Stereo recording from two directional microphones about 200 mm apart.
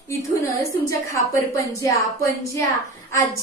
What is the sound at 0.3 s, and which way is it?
A woman's voice, 15° left (ahead or behind).